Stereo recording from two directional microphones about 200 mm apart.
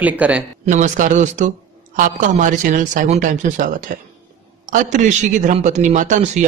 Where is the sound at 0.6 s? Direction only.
40° right (ahead or behind).